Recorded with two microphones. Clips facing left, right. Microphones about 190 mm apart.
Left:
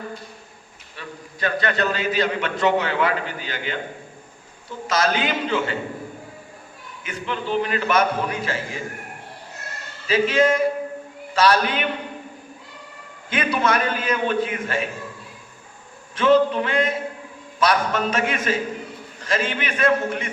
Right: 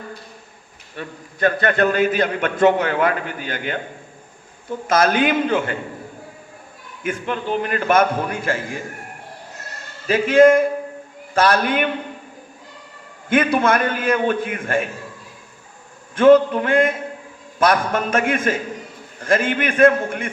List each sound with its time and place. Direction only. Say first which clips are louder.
0.9 s a man's voice: right 5 dB; 50° right (ahead or behind)
4.9 s a man's voice: right 5 dB; 50° right (ahead or behind)
7.0 s a man's voice: right 4 dB; 50° right (ahead or behind)
10.1 s a man's voice: right 6 dB; 50° right (ahead or behind)
13.3 s a man's voice: right 5 dB; 50° right (ahead or behind)
16.1 s a man's voice: right 5 dB; 50° right (ahead or behind)